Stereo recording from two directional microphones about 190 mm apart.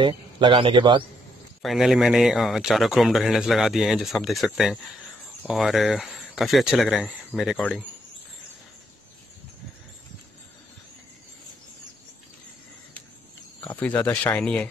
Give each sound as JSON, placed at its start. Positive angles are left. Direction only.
{"t": 0.0, "sound": "a man's voice", "side_deg": -25}
{"t": 1.6, "sound": "a man's voice", "side_deg": 0}
{"t": 13.7, "sound": "speech", "side_deg": 10}